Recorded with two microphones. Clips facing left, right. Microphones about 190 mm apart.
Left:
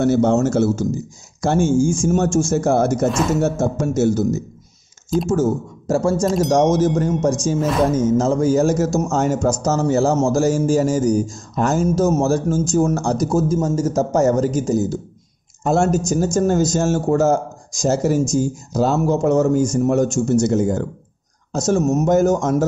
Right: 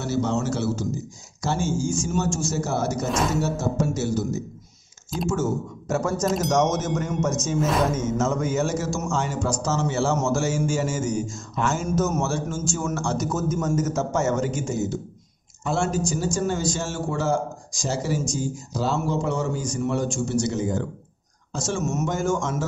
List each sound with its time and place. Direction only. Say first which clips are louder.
0.0 s speech: left 9 dB; 55° left (ahead or behind)
5.3 s a man's voice: left 4 dB; 35° left (ahead or behind)